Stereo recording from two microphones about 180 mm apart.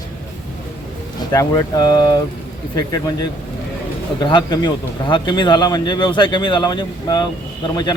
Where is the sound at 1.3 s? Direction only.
20° left (ahead or behind).